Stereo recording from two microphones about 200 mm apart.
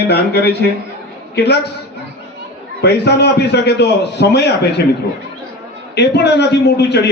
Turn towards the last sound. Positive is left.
turn(degrees=55)  # may be behind; listen again after turning